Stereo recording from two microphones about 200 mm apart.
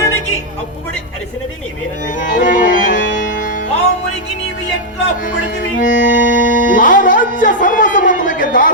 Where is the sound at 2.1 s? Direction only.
40° left (ahead or behind).